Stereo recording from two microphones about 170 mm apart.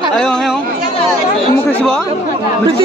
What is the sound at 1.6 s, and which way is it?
Speech, 5° left (ahead or behind).